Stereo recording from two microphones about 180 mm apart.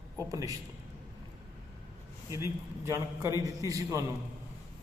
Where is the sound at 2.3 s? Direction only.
15° right (ahead or behind).